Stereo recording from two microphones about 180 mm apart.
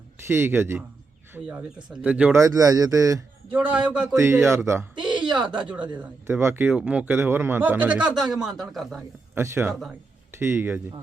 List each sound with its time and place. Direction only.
0.3 s speech: 15° right (ahead or behind)
4.9 s a sound: 25° right (ahead or behind)
5.7 s speech: 10° right (ahead or behind)
9.3 s a man's voice: 10° right (ahead or behind)